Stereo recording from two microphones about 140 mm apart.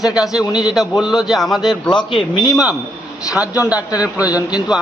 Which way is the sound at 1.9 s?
35° left (ahead or behind).